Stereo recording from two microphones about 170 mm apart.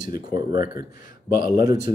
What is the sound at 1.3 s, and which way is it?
Speech, 50° left (ahead or behind).